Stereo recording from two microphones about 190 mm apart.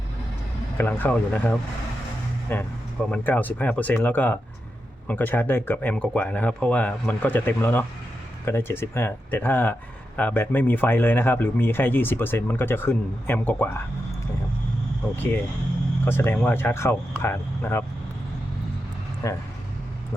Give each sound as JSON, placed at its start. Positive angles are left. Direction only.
{"t": 0.8, "sound": "speech", "side_deg": 10}
{"t": 16.0, "sound": "speech", "side_deg": 10}
{"t": 19.2, "sound": "speech", "side_deg": 15}